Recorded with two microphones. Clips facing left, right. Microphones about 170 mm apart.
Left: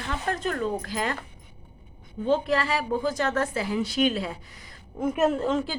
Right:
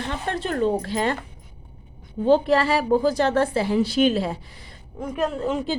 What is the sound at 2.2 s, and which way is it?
A woman's voice, 35° right (ahead or behind).